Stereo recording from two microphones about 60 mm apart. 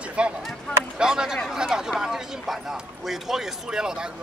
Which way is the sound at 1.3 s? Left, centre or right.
Centre.